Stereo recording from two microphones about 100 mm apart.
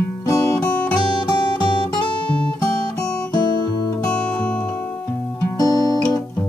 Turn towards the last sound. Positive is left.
turn(degrees=35)  # may be behind; listen again after turning